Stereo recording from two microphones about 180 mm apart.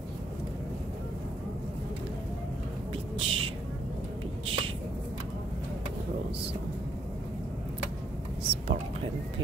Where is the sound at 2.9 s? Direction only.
30° right (ahead or behind).